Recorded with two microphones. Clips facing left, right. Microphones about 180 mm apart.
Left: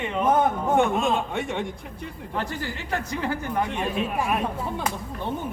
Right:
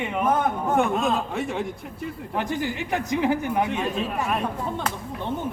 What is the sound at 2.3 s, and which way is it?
A man's voice, 15° right (ahead or behind).